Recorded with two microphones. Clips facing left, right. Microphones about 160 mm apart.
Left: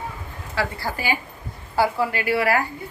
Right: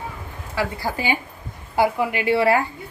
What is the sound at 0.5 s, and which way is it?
A woman's voice, 15° right (ahead or behind).